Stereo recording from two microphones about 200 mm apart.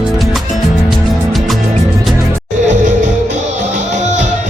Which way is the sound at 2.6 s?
35° right (ahead or behind).